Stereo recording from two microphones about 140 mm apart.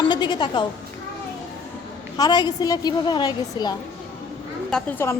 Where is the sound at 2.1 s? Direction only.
30° left (ahead or behind).